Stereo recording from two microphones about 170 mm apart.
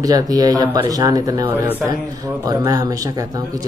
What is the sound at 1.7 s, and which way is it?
Speech, 10° right (ahead or behind).